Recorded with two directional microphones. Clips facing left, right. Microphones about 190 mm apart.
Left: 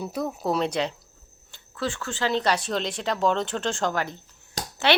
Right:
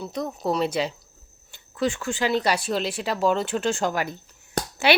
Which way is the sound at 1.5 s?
15° right (ahead or behind).